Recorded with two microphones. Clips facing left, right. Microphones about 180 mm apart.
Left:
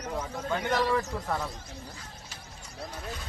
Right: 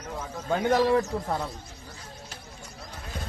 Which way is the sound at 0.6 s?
50° right (ahead or behind).